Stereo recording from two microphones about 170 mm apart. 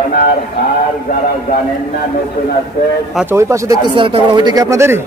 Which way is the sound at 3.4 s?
15° right (ahead or behind).